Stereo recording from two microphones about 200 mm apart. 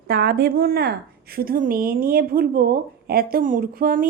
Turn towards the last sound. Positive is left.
turn(degrees=-45)  # may be behind; listen again after turning